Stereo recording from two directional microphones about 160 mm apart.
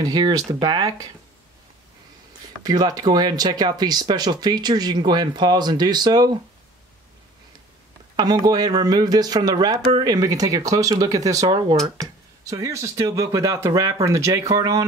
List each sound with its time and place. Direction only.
0.0 s speech: 25° right (ahead or behind)
2.6 s speech: 25° right (ahead or behind)
8.5 s speech: 25° right (ahead or behind)